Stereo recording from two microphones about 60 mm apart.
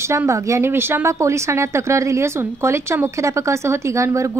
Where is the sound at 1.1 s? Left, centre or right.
Right.